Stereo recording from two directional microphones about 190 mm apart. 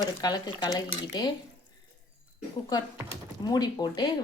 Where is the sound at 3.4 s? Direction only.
20° left (ahead or behind).